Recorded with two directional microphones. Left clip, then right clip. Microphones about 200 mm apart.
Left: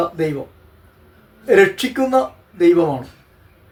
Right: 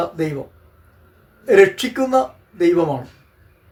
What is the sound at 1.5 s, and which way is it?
Speech, 5° right (ahead or behind).